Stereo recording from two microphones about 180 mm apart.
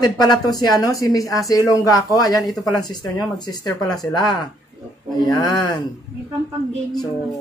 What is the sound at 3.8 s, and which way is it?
Speech, 20° left (ahead or behind).